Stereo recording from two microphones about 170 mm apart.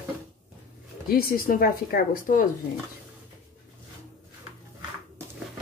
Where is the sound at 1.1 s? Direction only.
60° left (ahead or behind).